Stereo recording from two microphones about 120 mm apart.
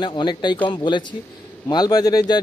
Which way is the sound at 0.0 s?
40° left (ahead or behind).